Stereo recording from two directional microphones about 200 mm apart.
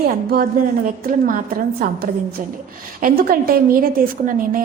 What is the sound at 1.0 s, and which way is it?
A woman's voice, 45° right (ahead or behind).